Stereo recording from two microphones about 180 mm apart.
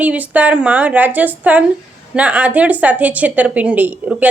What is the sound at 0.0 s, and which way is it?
Speech, 10° right (ahead or behind).